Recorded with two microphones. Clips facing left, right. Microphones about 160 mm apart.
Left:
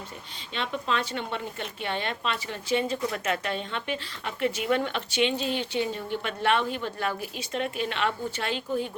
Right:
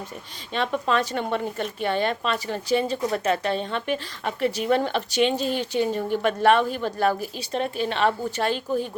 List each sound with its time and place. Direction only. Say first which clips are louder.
0.5 s speech: right 6 dB; 45° right (ahead or behind)